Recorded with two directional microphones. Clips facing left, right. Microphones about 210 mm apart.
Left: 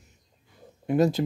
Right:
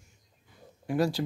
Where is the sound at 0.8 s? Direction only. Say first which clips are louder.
Left 5 dB; 20° left (ahead or behind).